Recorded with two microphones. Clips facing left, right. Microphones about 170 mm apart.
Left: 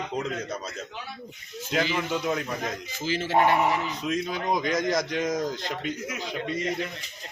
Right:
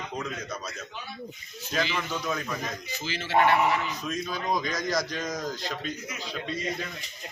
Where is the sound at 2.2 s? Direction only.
20° left (ahead or behind).